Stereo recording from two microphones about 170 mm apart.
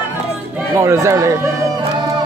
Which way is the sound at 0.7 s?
15° right (ahead or behind).